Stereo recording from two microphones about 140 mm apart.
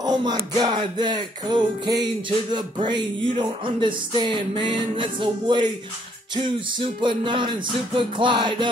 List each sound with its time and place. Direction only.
0.0 s music: 30° right (ahead or behind)